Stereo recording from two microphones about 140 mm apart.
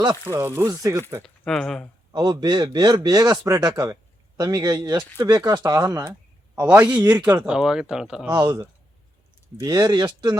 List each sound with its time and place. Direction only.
0.0 s a man's voice: 30° right (ahead or behind)
0.3 s a man's voice: 20° right (ahead or behind)
1.2 s speech: 5° left (ahead or behind)
2.1 s a man's voice: 30° right (ahead or behind)
6.6 s speech: 15° right (ahead or behind)
8.3 s speech: 30° right (ahead or behind)